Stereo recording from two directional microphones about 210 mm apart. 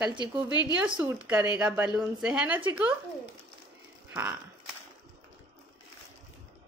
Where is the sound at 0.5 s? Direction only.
20° left (ahead or behind).